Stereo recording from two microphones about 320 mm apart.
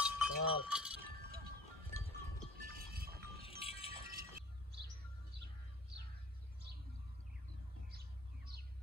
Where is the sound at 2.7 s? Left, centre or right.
Right.